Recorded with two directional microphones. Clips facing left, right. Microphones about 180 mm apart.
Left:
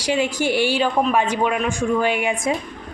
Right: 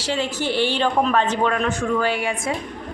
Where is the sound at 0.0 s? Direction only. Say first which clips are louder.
Left 3 dB; 15° left (ahead or behind).